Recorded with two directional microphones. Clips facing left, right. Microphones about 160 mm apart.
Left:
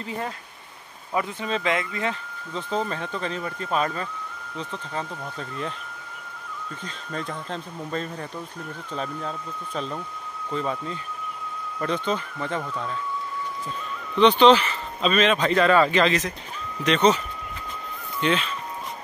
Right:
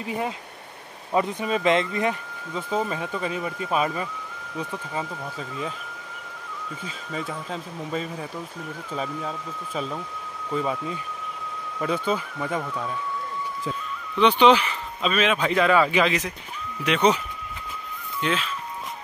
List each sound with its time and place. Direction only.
0.0 s speech: 15° right (ahead or behind)
2.5 s speech: 5° right (ahead or behind)
6.8 s speech: 5° right (ahead or behind)
14.1 s speech: 10° right (ahead or behind)
18.2 s speech: 5° right (ahead or behind)